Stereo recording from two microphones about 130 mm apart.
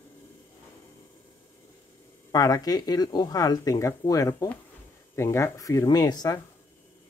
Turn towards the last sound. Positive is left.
turn(degrees=30)  # may be behind; listen again after turning